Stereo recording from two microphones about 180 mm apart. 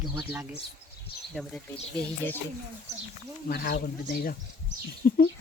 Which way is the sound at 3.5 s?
60° left (ahead or behind).